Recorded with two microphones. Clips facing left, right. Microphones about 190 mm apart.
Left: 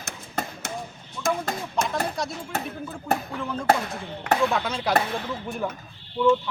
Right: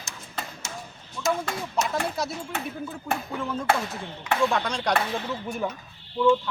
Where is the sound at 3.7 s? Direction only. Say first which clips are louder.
Left 3 dB; 40° left (ahead or behind).